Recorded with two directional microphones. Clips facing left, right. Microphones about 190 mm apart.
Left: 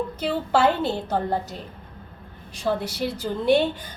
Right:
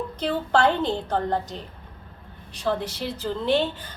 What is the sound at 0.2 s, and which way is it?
A woman's voice, 5° left (ahead or behind).